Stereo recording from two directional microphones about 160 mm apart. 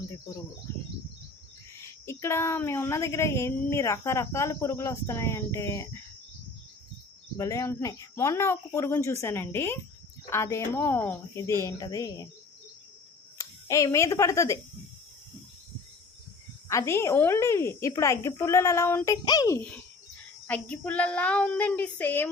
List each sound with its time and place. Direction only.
1.8 s speech: 15° left (ahead or behind)
7.3 s a woman's voice: 20° left (ahead or behind)
13.4 s speech: 20° left (ahead or behind)
16.6 s speech: 15° left (ahead or behind)
19.1 s a woman's voice: 25° left (ahead or behind)
20.5 s speech: 10° left (ahead or behind)